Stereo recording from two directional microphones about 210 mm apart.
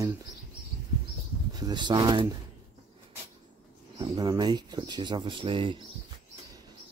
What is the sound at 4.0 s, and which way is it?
Speech, 20° right (ahead or behind).